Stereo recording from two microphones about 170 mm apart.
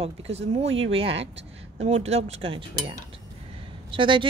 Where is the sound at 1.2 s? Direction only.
40° right (ahead or behind).